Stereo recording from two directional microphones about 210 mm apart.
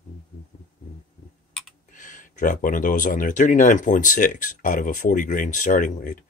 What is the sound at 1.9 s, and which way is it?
Speech, 35° left (ahead or behind).